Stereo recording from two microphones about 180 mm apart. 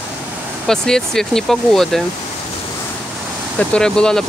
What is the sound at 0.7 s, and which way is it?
Speech, 5° left (ahead or behind).